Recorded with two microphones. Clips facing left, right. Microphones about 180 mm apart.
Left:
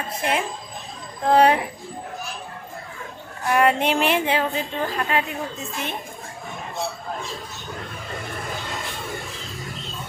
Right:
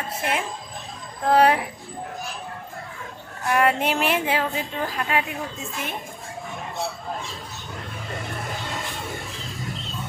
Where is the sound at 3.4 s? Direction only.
Centre (ahead or behind).